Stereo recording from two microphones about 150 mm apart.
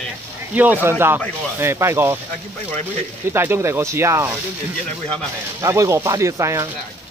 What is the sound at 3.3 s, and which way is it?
Speech, 15° right (ahead or behind).